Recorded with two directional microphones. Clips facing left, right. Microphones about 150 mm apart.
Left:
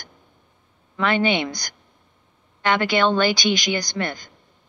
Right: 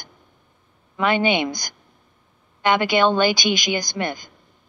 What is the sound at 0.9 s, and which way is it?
Speech, 15° right (ahead or behind).